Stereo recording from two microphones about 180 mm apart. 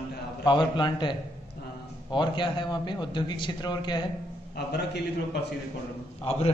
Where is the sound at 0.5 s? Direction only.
25° left (ahead or behind).